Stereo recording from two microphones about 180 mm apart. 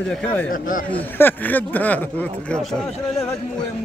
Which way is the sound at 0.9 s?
10° left (ahead or behind).